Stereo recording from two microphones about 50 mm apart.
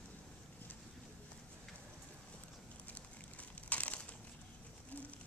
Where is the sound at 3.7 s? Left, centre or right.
Left.